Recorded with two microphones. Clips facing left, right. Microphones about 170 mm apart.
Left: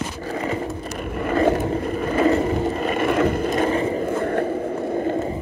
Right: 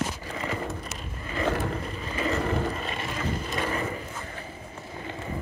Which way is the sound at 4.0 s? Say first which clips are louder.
Left 17 dB; 60° left (ahead or behind).